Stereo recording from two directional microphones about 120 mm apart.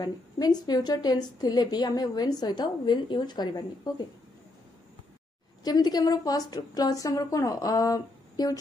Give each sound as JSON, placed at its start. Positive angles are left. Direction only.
{"t": 0.0, "sound": "a woman's voice", "side_deg": 35}
{"t": 5.6, "sound": "a woman's voice", "side_deg": 35}